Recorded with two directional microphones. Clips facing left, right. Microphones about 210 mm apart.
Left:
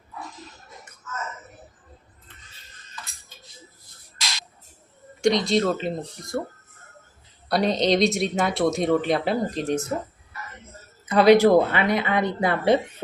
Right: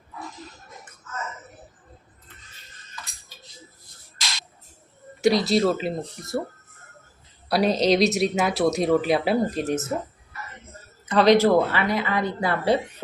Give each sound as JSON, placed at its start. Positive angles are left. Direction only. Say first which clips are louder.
{"t": 5.2, "sound": "a woman's voice", "louder": "right 1 dB", "side_deg": -5}
{"t": 7.4, "sound": "a woman's voice", "louder": "right 1 dB", "side_deg": 0}
{"t": 11.1, "sound": "speech", "louder": "left 2 dB", "side_deg": 10}